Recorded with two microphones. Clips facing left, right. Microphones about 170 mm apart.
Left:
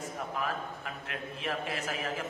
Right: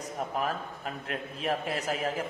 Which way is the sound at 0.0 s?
40° right (ahead or behind).